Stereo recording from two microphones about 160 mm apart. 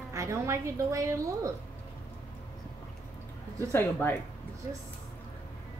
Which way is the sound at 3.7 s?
15° left (ahead or behind).